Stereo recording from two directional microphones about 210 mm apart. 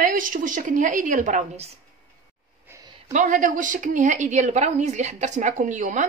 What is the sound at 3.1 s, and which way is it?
Speech, 35° right (ahead or behind).